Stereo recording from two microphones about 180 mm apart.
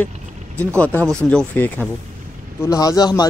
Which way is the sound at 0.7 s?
5° left (ahead or behind).